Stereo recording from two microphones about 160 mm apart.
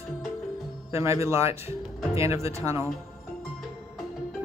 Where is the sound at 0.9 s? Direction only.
15° right (ahead or behind).